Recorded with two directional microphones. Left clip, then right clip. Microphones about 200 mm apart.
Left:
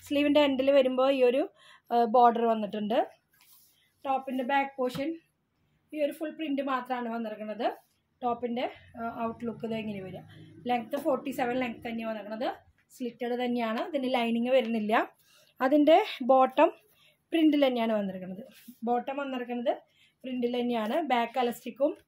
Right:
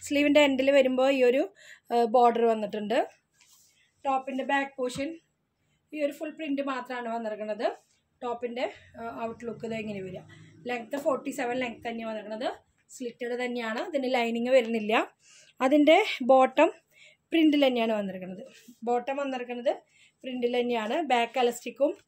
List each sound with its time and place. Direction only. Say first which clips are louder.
0.0 s speech: right 2 dB; 20° right (ahead or behind)